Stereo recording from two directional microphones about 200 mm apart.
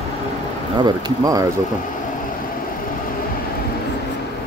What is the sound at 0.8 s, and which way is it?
Speech, 20° right (ahead or behind).